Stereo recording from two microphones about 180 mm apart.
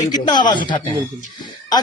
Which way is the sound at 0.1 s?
25° left (ahead or behind).